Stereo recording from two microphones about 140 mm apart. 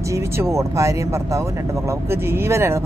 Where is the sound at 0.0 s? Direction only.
20° right (ahead or behind).